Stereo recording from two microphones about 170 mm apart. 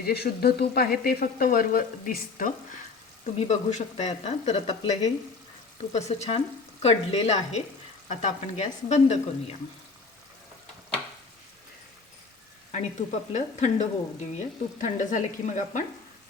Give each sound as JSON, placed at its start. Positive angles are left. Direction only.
{"t": 0.0, "sound": "frying", "side_deg": 70}
{"t": 3.3, "sound": "speech", "side_deg": 40}
{"t": 8.0, "sound": "frying", "side_deg": 45}
{"t": 13.0, "sound": "frying", "side_deg": 45}